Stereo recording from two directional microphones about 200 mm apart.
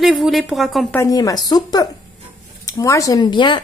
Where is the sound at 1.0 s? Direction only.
15° left (ahead or behind).